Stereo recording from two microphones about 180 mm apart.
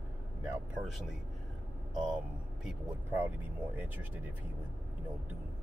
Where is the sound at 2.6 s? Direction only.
10° right (ahead or behind).